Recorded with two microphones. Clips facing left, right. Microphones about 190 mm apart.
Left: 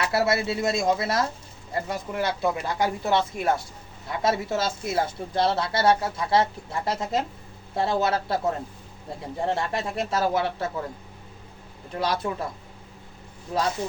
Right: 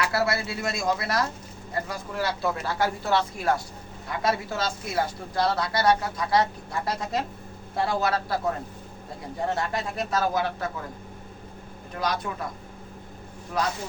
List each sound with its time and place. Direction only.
0.0 s speech: 25° left (ahead or behind)
11.9 s speech: 30° left (ahead or behind)